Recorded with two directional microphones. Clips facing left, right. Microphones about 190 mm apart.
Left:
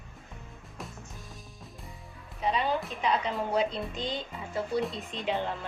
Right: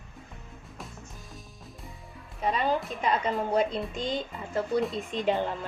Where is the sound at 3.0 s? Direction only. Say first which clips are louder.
Even; 45° right (ahead or behind).